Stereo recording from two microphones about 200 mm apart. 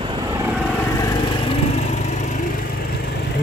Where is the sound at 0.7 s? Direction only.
15° left (ahead or behind); by 2.4 s 35° left (ahead or behind).